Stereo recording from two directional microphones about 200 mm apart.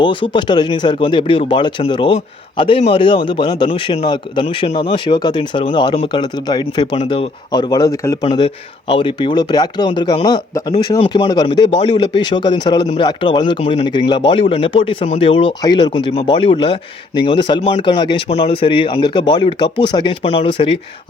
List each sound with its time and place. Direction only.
0.0 s speech: 25° left (ahead or behind)